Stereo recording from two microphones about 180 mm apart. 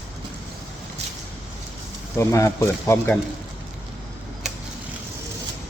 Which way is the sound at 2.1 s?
15° left (ahead or behind).